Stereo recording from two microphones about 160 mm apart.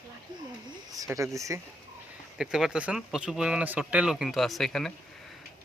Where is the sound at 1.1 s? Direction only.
20° right (ahead or behind).